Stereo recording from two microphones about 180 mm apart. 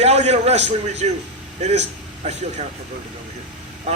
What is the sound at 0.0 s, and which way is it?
A man's voice, 35° right (ahead or behind).